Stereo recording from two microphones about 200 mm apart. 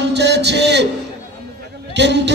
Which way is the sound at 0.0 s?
60° right (ahead or behind).